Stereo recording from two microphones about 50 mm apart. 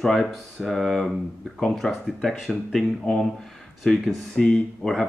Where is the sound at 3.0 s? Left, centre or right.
Centre.